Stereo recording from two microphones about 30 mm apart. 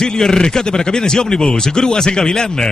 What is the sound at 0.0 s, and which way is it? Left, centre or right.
Speech, centre.